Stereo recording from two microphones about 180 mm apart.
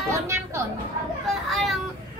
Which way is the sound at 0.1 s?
15° right (ahead or behind).